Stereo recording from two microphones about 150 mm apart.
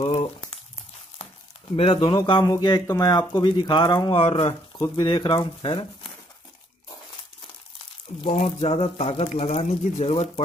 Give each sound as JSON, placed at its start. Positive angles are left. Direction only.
{"t": 0.0, "sound": "crumpling", "side_deg": 45}
{"t": 1.8, "sound": "speech", "side_deg": 35}
{"t": 8.2, "sound": "speech", "side_deg": 45}